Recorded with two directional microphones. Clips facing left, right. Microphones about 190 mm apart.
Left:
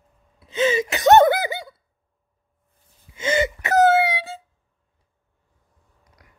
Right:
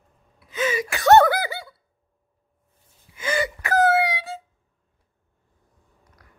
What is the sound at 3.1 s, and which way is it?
Wail, 25° left (ahead or behind).